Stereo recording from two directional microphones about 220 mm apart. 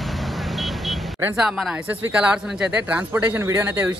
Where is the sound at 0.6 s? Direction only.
Centre (ahead or behind).